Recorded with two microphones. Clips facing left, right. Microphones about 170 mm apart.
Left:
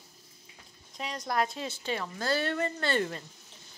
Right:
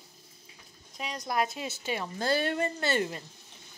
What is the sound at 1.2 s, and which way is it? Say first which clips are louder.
A woman's voice: even; 10° right (ahead or behind).